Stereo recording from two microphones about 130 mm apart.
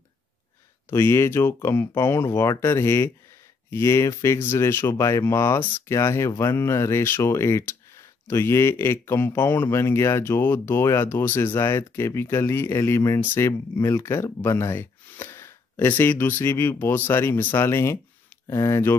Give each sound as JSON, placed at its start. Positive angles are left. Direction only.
{"t": 0.8, "sound": "speech", "side_deg": 20}